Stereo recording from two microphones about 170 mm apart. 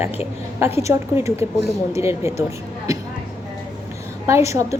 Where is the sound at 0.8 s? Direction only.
15° right (ahead or behind).